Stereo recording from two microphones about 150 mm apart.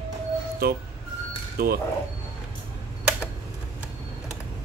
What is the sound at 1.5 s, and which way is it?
Speech, 85° right.